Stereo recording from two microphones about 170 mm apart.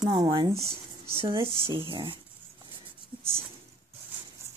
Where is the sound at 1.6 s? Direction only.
30° right (ahead or behind).